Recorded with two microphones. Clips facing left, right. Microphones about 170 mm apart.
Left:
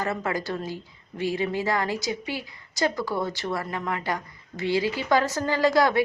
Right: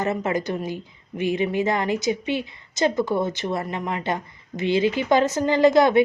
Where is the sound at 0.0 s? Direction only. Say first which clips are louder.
Right 4 dB; 20° right (ahead or behind).